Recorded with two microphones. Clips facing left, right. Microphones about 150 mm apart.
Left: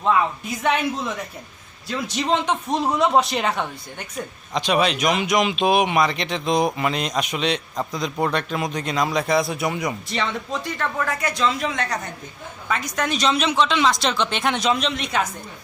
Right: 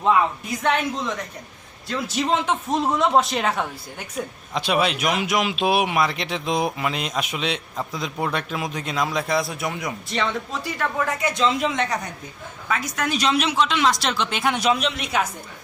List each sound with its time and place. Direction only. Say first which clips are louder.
0.6 s a man's voice: left 1 dB; 5° left (ahead or behind)
11.0 s a man's voice: right 1 dB; 20° right (ahead or behind)
12.6 s a man's voice: left 1 dB; 5° right (ahead or behind)